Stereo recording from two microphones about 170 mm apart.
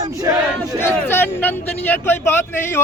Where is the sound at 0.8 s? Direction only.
10° left (ahead or behind).